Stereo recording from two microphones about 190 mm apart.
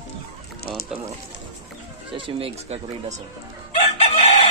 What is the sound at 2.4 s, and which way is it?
Speech, 30° right (ahead or behind).